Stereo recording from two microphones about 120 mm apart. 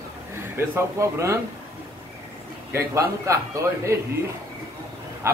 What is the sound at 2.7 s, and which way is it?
A man's voice, 25° right (ahead or behind).